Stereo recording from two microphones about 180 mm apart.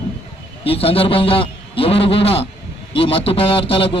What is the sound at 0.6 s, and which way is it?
A man's voice, 30° left (ahead or behind).